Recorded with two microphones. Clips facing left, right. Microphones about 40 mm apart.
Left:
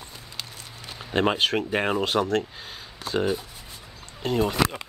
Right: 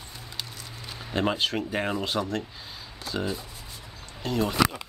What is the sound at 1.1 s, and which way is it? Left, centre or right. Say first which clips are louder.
Speech: left 4 dB; left.